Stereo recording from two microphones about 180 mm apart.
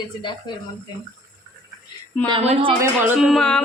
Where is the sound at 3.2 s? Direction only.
Centre (ahead or behind).